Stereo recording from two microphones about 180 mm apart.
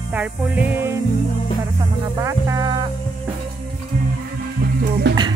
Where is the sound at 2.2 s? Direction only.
15° right (ahead or behind).